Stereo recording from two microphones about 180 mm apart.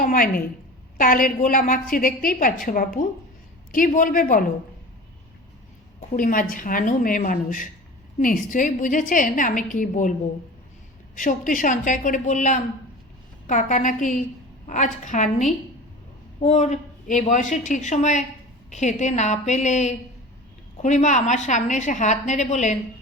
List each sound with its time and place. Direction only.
0.0 s a woman's voice: 50° left (ahead or behind)
6.1 s a woman's voice: 50° left (ahead or behind)